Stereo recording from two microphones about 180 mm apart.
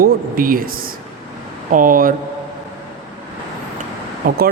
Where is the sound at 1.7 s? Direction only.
50° right (ahead or behind).